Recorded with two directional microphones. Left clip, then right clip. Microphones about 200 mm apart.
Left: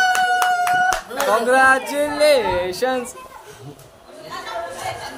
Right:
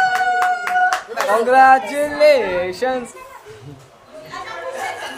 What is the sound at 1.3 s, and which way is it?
Speech, centre (ahead or behind).